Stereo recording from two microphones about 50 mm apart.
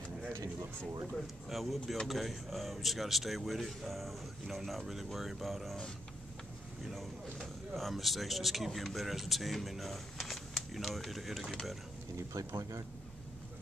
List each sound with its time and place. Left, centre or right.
1.2 s speech: centre
6.8 s speech: centre
12.2 s speech: right